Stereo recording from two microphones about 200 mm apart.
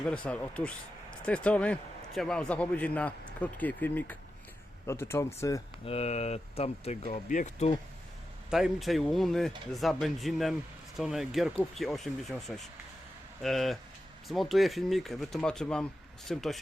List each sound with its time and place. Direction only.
0.0 s a man's voice: 5° left (ahead or behind)
5.8 s speech: 30° left (ahead or behind)
8.4 s speech: 5° right (ahead or behind)